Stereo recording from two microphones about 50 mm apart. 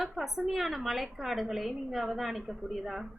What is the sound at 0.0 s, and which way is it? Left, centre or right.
A woman's voice, centre.